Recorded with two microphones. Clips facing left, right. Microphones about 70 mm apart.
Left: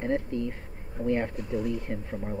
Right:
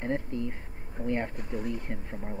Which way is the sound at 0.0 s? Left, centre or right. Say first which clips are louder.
Left 3 dB; centre.